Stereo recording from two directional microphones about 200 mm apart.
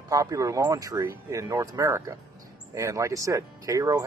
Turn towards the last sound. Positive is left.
turn(degrees=-15)  # may be behind; listen again after turning